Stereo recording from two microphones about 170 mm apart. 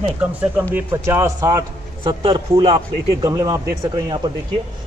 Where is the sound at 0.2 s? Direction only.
10° right (ahead or behind).